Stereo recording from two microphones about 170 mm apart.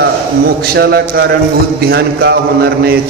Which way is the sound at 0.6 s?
75° right (ahead or behind).